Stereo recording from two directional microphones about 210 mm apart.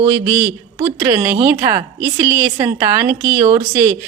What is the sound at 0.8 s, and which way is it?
A woman's voice, 20° right (ahead or behind).